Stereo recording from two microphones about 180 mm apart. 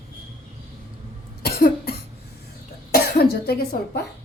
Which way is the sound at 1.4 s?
60° left (ahead or behind).